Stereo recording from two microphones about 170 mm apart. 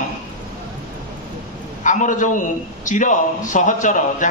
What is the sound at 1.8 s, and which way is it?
A man's voice, 45° left (ahead or behind).